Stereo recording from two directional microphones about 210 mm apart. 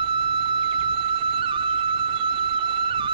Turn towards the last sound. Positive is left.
turn(degrees=-25)  # may be behind; listen again after turning